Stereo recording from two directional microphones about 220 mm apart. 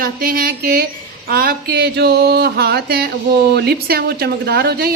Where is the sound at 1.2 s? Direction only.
40° right (ahead or behind).